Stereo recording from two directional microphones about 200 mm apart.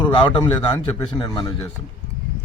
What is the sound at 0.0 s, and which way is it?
A man's voice, 25° left (ahead or behind).